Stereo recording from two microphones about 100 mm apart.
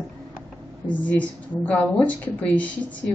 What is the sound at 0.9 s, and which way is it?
A woman's voice, 15° left (ahead or behind).